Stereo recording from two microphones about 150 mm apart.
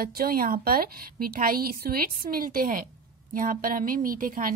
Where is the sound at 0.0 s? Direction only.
80° right.